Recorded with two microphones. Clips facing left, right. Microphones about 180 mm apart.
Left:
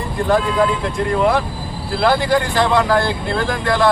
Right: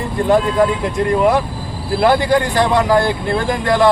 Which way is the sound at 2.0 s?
15° right (ahead or behind).